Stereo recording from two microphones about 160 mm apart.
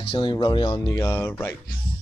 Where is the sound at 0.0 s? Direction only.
30° left (ahead or behind); by 1.5 s 15° left (ahead or behind).